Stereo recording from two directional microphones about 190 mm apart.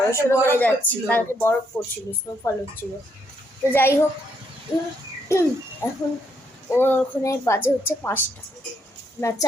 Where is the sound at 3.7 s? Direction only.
10° left (ahead or behind).